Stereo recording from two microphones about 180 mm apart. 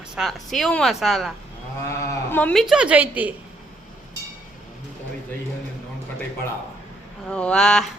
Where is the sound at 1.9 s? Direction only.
10° left (ahead or behind).